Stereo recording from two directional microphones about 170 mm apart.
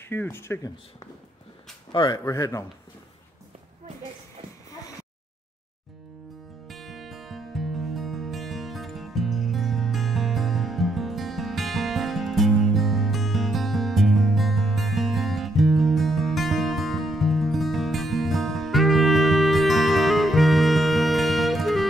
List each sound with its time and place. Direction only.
0.1 s a man's voice: 15° left (ahead or behind)
6.7 s music: centre (ahead or behind)